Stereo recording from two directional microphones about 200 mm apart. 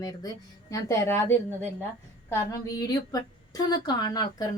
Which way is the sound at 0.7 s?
15° left (ahead or behind).